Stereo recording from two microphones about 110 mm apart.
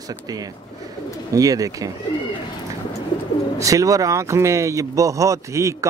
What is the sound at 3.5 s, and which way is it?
Speech, 30° right (ahead or behind).